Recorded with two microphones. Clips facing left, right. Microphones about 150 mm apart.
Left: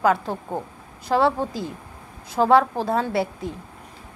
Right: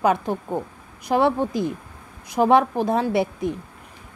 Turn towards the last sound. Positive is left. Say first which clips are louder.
# right 3 dB
turn(degrees=-20)  # may be behind; listen again after turning